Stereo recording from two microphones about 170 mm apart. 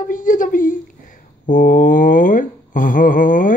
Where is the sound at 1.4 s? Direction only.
50° left (ahead or behind).